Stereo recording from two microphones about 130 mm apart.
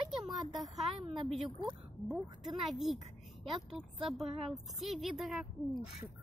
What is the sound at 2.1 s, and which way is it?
Speech, centre (ahead or behind).